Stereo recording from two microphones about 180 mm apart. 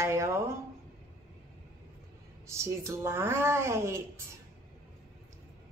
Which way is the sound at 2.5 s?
15° right (ahead or behind).